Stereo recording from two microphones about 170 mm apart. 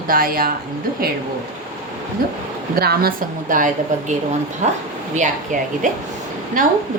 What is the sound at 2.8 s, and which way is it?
A woman's voice, 65° right (ahead or behind).